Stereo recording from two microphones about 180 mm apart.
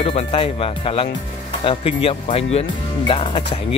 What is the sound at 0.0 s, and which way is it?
Speech, 30° left (ahead or behind).